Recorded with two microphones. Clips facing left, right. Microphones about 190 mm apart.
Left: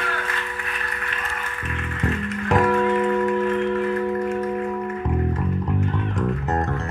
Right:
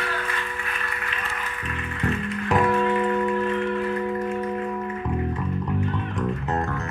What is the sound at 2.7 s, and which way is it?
Music, centre (ahead or behind).